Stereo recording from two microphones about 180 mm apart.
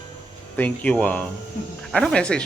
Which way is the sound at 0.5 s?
10° left (ahead or behind).